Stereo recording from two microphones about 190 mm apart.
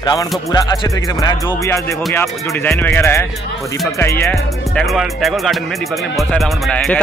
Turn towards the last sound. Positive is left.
turn(degrees=5)  # may be behind; listen again after turning